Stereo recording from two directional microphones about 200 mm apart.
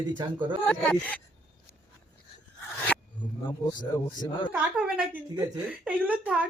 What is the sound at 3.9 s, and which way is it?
Speech, 20° left (ahead or behind).